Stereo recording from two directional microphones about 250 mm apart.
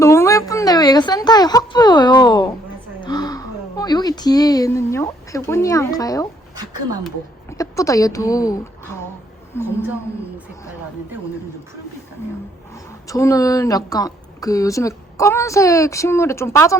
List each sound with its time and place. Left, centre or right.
0.0 s a sound: centre
7.5 s a woman's voice: centre
9.6 s a woman's voice: centre
12.7 s a woman's voice: centre